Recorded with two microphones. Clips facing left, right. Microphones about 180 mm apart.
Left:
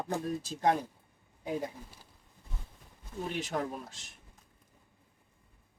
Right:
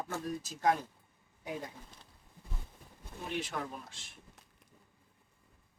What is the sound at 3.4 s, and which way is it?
Speech, 40° left (ahead or behind).